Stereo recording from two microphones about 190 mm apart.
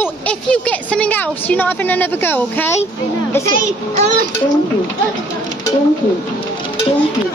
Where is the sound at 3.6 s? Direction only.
40° right (ahead or behind).